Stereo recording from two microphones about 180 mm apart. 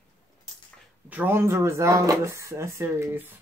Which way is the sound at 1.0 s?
10° right (ahead or behind).